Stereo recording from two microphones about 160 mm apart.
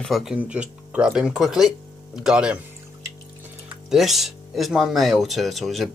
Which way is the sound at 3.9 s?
Centre (ahead or behind).